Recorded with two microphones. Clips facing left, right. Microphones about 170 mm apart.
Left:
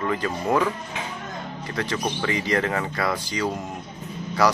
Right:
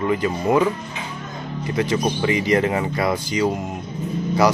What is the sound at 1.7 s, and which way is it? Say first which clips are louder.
Speech: right 6 dB; 15° right (ahead or behind).